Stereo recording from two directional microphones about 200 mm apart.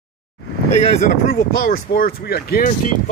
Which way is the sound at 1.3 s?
45° left (ahead or behind).